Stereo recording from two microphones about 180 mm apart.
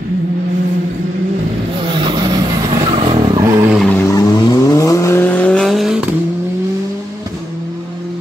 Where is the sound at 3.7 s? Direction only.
Centre (ahead or behind).